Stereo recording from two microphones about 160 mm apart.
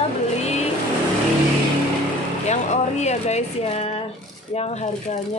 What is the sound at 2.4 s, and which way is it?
Speech, 45° left (ahead or behind).